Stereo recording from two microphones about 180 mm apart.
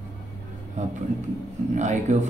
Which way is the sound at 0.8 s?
45° right (ahead or behind).